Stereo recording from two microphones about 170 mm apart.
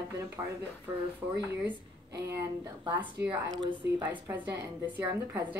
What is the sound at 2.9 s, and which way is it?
A woman's voice, 10° right (ahead or behind).